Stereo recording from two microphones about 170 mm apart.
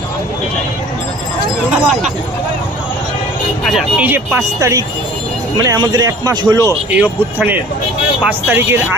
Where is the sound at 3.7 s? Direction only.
5° right (ahead or behind); by 6.7 s 20° right (ahead or behind).